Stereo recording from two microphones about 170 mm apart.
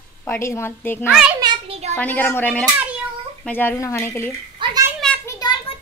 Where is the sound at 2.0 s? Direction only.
10° left (ahead or behind).